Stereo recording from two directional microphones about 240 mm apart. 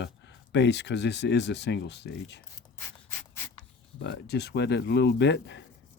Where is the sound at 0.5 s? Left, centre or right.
Left.